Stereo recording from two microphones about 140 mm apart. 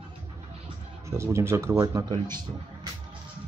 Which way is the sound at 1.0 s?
20° right (ahead or behind).